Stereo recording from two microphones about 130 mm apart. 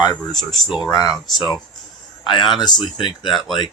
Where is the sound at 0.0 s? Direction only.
30° left (ahead or behind).